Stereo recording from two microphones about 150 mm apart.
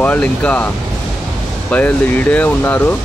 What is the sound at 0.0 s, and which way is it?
Speech, 10° left (ahead or behind).